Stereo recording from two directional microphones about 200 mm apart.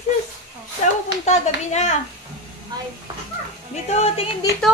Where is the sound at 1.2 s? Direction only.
35° left (ahead or behind).